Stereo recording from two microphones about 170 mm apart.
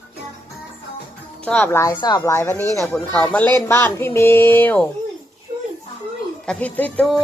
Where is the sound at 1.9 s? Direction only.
25° left (ahead or behind); by 4.9 s 10° left (ahead or behind).